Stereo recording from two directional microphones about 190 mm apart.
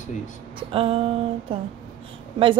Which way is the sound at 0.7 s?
30° right (ahead or behind).